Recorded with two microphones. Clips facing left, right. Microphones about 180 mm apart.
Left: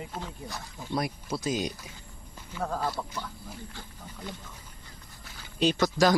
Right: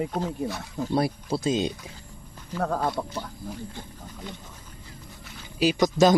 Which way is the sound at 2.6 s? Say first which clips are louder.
Right 5 dB; 55° right (ahead or behind).